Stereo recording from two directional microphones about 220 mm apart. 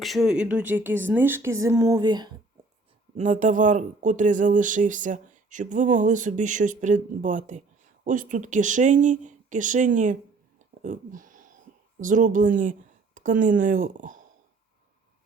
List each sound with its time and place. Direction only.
0.0 s speech: centre (ahead or behind); by 2.3 s 20° right (ahead or behind)
3.2 s speech: 35° right (ahead or behind)
10.6 s a sound: 35° right (ahead or behind)
11.9 s speech: 35° right (ahead or behind)